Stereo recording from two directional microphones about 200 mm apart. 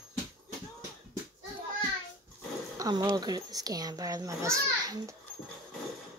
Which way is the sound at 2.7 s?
20° right (ahead or behind).